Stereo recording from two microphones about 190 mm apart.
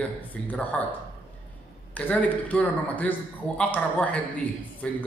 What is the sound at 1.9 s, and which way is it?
Speech, 10° left (ahead or behind).